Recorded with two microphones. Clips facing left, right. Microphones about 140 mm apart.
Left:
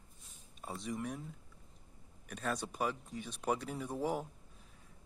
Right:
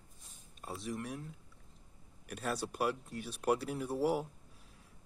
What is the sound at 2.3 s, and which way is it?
Speech, 5° right (ahead or behind).